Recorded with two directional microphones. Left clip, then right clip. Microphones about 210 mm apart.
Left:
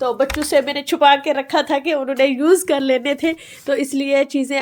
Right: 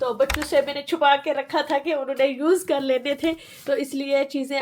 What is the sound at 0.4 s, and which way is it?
A woman's voice, 55° left (ahead or behind).